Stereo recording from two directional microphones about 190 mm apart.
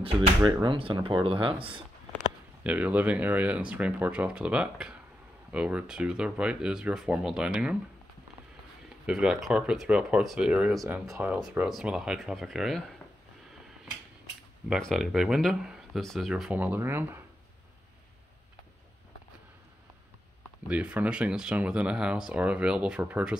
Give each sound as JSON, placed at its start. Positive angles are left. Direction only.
{"t": 0.0, "sound": "speech", "side_deg": -25}
{"t": 2.6, "sound": "speech", "side_deg": -5}
{"t": 9.0, "sound": "speech", "side_deg": -5}
{"t": 14.7, "sound": "speech", "side_deg": 0}
{"t": 20.6, "sound": "speech", "side_deg": -5}